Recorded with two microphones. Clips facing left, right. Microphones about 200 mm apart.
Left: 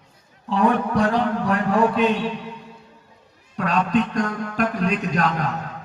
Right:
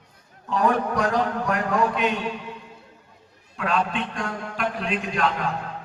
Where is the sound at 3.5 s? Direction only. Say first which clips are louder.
Left 1 dB; 40° left (ahead or behind).